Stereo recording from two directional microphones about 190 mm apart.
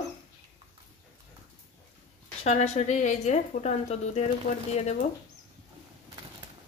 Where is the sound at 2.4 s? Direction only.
35° left (ahead or behind).